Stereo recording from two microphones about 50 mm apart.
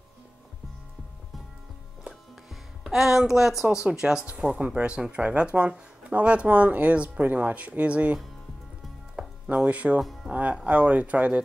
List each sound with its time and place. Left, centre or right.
2.8 s speech: centre; by 8.2 s right
9.2 s music: right
9.6 s speech: right